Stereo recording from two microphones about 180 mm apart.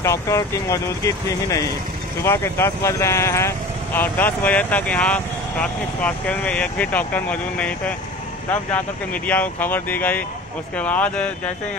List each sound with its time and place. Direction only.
0.0 s speech: 15° left (ahead or behind)